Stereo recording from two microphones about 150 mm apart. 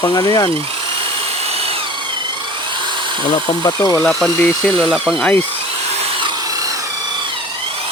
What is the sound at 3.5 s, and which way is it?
Speech, 30° left (ahead or behind).